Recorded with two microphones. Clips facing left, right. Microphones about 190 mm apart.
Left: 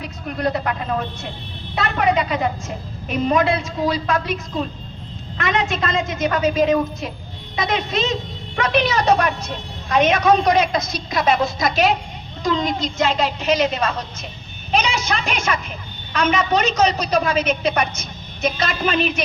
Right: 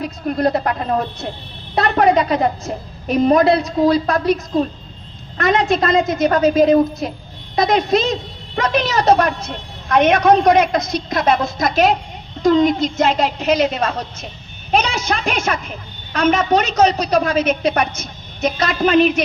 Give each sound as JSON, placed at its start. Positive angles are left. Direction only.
{"t": 0.0, "sound": "a woman's voice", "side_deg": -40}
{"t": 9.9, "sound": "a woman's voice", "side_deg": -55}